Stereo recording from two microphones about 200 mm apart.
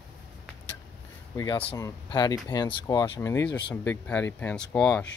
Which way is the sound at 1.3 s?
15° left (ahead or behind).